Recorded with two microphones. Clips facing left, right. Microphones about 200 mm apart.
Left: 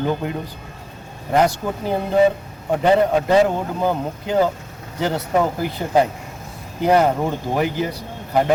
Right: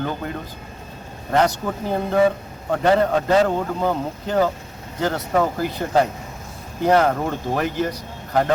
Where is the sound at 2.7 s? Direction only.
15° left (ahead or behind).